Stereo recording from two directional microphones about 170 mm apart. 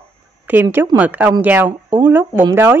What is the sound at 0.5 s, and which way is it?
Speech, 10° right (ahead or behind).